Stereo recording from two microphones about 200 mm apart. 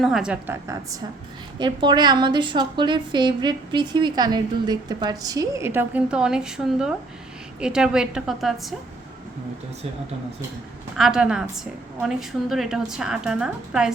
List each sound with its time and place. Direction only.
0.0 s a woman's voice: 5° right (ahead or behind)
0.7 s a woman's voice: 15° right (ahead or behind); by 8.7 s centre (ahead or behind)
10.9 s a woman's voice: 5° right (ahead or behind)